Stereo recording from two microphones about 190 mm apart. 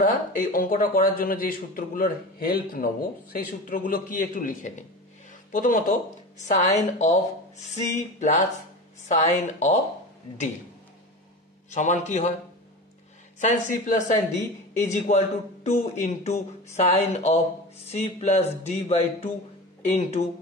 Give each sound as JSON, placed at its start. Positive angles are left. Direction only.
{"t": 0.0, "sound": "a man's voice", "side_deg": 45}
{"t": 11.7, "sound": "a man's voice", "side_deg": 40}
{"t": 13.4, "sound": "a man's voice", "side_deg": 40}